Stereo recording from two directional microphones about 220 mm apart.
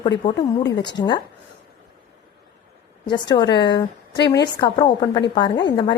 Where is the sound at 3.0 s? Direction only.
20° left (ahead or behind).